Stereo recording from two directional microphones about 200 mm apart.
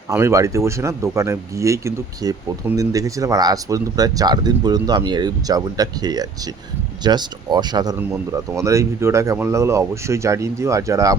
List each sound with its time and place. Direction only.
0.1 s speech: 15° right (ahead or behind)